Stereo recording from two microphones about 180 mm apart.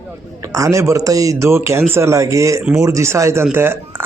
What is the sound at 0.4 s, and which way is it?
Speech, 15° right (ahead or behind).